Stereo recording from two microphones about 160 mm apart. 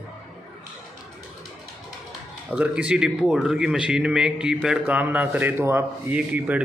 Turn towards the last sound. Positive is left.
turn(degrees=-10)  # may be behind; listen again after turning